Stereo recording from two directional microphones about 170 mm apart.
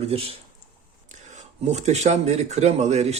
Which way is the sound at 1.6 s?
40° right (ahead or behind).